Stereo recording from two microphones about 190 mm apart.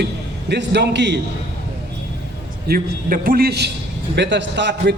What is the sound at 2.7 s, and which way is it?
A man's voice, 50° right (ahead or behind).